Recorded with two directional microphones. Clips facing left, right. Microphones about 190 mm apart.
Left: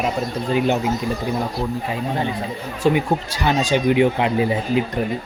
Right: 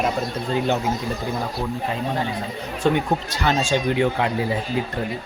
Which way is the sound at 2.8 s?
10° left (ahead or behind).